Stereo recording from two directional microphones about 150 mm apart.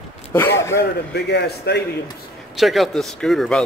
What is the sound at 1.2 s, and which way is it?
Speech, 90° left.